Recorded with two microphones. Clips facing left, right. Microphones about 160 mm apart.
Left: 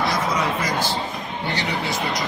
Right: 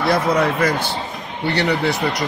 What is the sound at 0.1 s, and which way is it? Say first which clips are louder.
Speech: right 6 dB; 60° right (ahead or behind).